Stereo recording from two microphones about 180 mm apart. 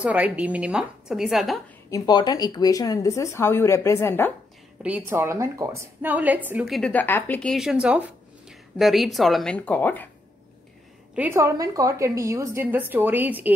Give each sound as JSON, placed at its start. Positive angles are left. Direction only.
{"t": 0.0, "sound": "a woman's voice", "side_deg": -10}
{"t": 1.9, "sound": "speech", "side_deg": 20}
{"t": 4.8, "sound": "a woman's voice", "side_deg": -10}
{"t": 7.5, "sound": "a woman's voice", "side_deg": -5}
{"t": 11.1, "sound": "a woman's voice", "side_deg": -15}